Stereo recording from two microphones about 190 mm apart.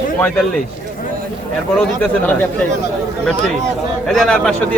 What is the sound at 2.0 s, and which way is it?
Speech, 5° left (ahead or behind).